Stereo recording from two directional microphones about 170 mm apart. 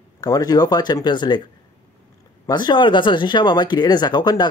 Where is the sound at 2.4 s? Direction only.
25° left (ahead or behind).